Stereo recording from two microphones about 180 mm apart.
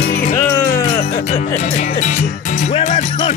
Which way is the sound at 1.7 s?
40° left (ahead or behind).